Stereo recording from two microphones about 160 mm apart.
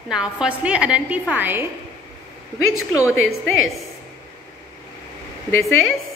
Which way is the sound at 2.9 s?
20° left (ahead or behind).